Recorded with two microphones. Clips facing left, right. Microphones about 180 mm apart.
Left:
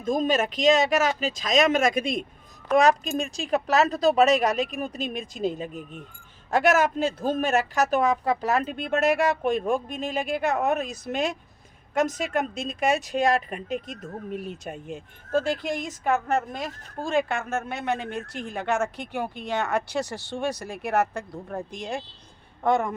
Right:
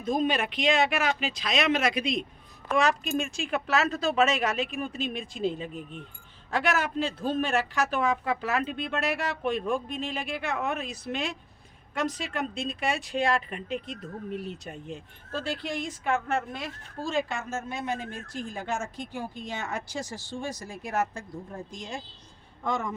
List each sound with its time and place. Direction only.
0.0 s speech: 45° left (ahead or behind)
17.1 s a woman's voice: 60° left (ahead or behind)